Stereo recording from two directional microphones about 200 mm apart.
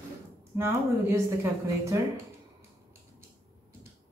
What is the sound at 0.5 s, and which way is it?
Speech, 15° right (ahead or behind).